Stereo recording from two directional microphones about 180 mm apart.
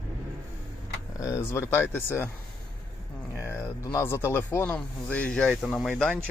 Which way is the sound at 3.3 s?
15° left (ahead or behind).